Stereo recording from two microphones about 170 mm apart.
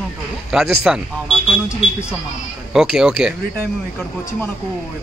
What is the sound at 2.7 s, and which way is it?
Speech, 5° right (ahead or behind).